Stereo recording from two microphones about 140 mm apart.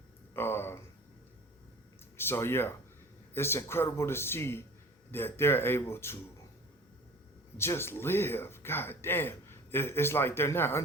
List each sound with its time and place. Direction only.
0.3 s a sound: 15° left (ahead or behind)
2.1 s speech: 15° left (ahead or behind)
7.5 s speech: 20° left (ahead or behind)